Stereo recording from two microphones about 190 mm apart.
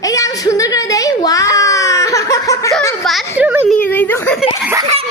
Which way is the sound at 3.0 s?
5° right (ahead or behind).